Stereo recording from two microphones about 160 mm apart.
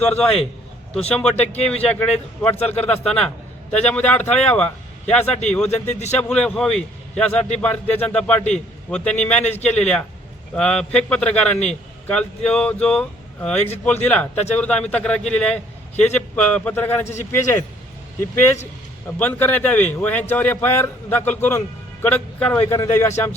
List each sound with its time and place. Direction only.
0.2 s a man's voice: 5° left (ahead or behind)
2.6 s a man's voice: 40° left (ahead or behind)
2.8 s a man's voice: 5° left (ahead or behind)
5.9 s a man's voice: 45° left (ahead or behind)
6.1 s a man's voice: 5° left (ahead or behind)
9.4 s a man's voice: 45° left (ahead or behind)
9.6 s a man's voice: 5° left (ahead or behind)